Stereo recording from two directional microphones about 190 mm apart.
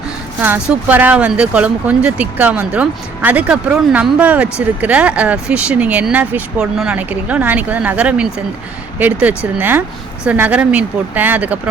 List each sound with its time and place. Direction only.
0.4 s speech: 10° right (ahead or behind)